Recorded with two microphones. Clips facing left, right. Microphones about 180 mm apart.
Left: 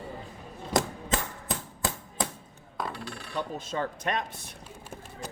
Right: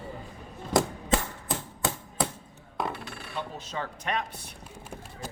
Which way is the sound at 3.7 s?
45° left (ahead or behind).